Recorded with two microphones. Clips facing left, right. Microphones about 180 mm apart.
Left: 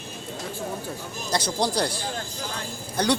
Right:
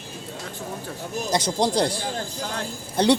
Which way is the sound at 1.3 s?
20° right (ahead or behind).